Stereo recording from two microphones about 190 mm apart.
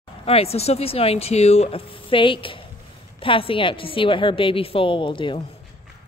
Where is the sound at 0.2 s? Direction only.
30° left (ahead or behind).